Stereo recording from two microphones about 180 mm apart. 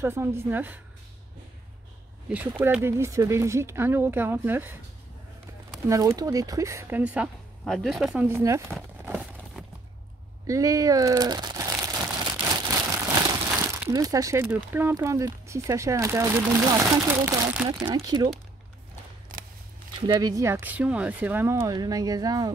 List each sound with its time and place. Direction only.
0.0 s speech: 15° right (ahead or behind)
2.6 s speech: 15° right (ahead or behind)
9.0 s a sound: 5° right (ahead or behind)
10.4 s crumpling: 20° right (ahead or behind)
13.6 s speech: 15° right (ahead or behind)
20.1 s speech: 20° right (ahead or behind)